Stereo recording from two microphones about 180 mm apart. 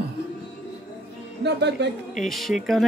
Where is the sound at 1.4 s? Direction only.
70° right (ahead or behind).